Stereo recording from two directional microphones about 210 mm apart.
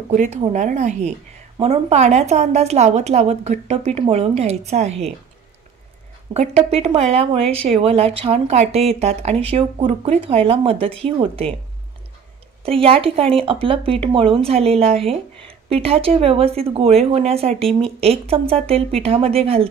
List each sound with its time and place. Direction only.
0.1 s a woman's voice: 35° right (ahead or behind)
6.3 s speech: 30° right (ahead or behind)
12.6 s speech: 25° right (ahead or behind)